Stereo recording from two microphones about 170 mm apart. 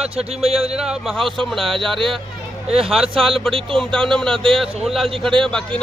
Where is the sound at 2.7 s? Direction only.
35° right (ahead or behind).